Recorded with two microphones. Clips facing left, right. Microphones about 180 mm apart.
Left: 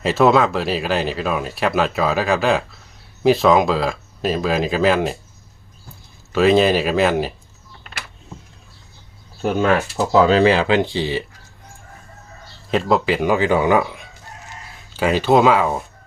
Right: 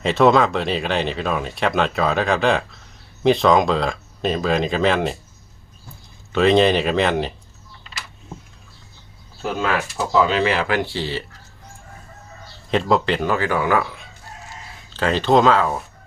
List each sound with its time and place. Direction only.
0.0 s speech: 5° left (ahead or behind)
6.3 s speech: 5° left (ahead or behind)
9.4 s speech: 40° left (ahead or behind); by 11.3 s 15° left (ahead or behind)
12.7 s speech: 5° left (ahead or behind)